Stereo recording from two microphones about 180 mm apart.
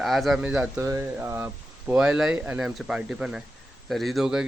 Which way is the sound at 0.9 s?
15° right (ahead or behind).